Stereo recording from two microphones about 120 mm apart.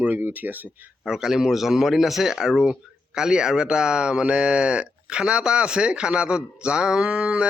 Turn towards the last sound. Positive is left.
turn(degrees=-10)  # may be behind; listen again after turning